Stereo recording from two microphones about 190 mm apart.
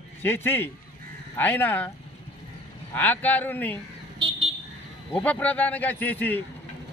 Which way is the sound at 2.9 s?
10° left (ahead or behind).